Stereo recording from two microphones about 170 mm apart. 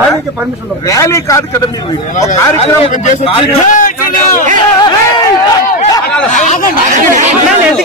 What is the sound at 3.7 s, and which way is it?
Speech, 50° left (ahead or behind).